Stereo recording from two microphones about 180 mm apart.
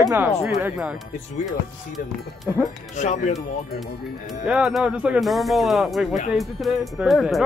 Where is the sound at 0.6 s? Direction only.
10° right (ahead or behind).